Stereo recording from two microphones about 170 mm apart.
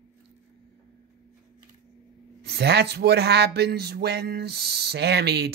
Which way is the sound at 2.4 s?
75° right (ahead or behind).